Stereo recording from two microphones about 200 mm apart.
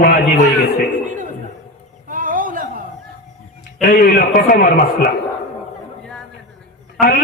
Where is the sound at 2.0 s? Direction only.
40° right (ahead or behind).